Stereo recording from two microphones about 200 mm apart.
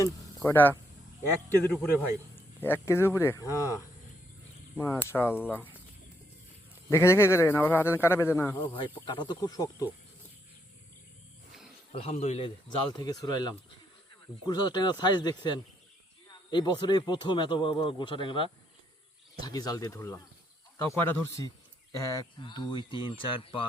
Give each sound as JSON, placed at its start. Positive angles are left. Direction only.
{"t": 0.4, "sound": "a man's voice", "side_deg": 10}
{"t": 6.9, "sound": "a man's voice", "side_deg": 15}
{"t": 8.5, "sound": "speech", "side_deg": 25}
{"t": 11.9, "sound": "a man's voice", "side_deg": 30}
{"t": 12.9, "sound": "a man's voice", "side_deg": 20}